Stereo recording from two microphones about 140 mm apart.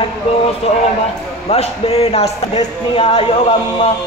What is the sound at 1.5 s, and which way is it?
Speech, 45° left (ahead or behind).